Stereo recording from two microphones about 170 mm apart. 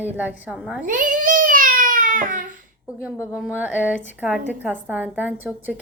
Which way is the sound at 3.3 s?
10° right (ahead or behind).